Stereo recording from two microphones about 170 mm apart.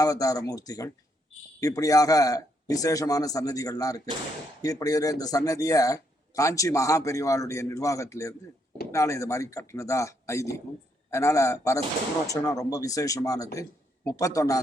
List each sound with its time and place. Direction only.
0.0 s a man's voice: 20° left (ahead or behind)